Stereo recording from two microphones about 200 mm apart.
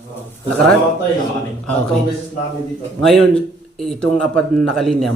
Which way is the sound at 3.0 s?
Centre (ahead or behind).